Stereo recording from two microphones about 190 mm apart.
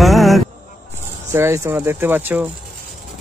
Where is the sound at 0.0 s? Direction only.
Centre (ahead or behind).